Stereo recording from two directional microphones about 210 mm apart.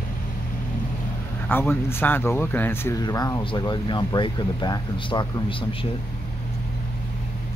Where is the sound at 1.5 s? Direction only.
10° left (ahead or behind).